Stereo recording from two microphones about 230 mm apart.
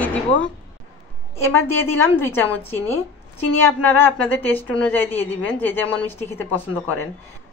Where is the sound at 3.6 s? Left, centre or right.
Centre.